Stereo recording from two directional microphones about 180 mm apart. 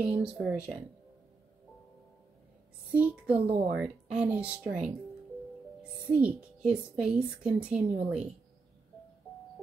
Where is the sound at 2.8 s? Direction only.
10° right (ahead or behind).